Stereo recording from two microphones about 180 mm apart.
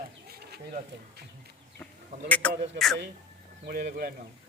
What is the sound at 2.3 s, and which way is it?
Speech, 5° left (ahead or behind).